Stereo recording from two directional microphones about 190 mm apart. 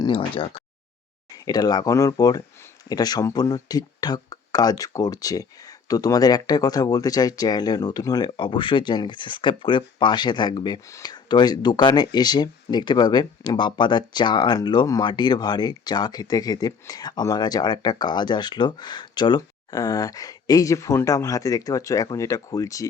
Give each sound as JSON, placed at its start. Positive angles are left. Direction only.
{"t": 0.0, "sound": "speech", "side_deg": 25}